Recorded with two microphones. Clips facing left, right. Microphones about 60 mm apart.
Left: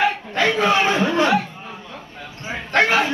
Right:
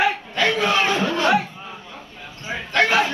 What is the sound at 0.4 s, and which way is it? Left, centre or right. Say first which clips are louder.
Speech: left 2 dB; left.